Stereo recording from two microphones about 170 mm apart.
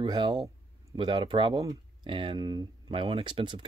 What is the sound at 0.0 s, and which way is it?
Speech, 25° right (ahead or behind).